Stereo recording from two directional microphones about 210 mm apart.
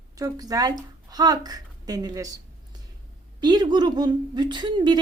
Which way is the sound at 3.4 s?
20° right (ahead or behind).